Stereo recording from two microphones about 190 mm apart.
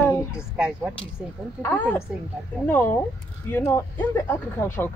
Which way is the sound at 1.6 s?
10° left (ahead or behind).